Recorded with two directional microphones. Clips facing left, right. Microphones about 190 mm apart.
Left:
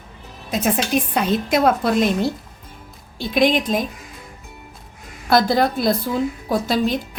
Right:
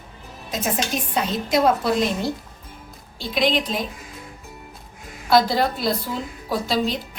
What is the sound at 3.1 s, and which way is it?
Speech, 50° left (ahead or behind).